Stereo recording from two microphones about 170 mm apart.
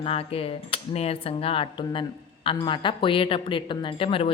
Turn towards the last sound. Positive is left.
turn(degrees=30)  # may be behind; listen again after turning